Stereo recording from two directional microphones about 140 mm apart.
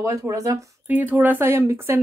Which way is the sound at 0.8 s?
10° right (ahead or behind).